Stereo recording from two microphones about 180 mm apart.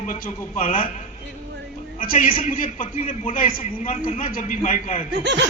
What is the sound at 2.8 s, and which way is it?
A man's voice, 35° left (ahead or behind).